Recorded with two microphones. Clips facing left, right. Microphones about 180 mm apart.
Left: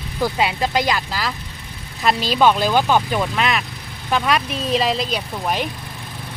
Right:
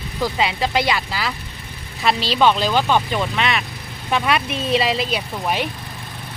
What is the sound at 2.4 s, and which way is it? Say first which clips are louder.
Speech: left 1 dB; 5° left (ahead or behind).